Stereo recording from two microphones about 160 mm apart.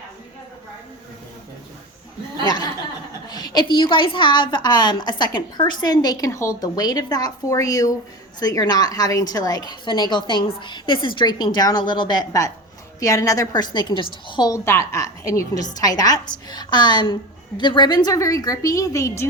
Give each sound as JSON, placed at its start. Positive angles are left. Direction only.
{"t": 2.4, "sound": "a woman's voice", "side_deg": 25}